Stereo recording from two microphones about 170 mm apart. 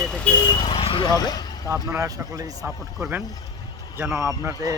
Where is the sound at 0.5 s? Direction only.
30° left (ahead or behind).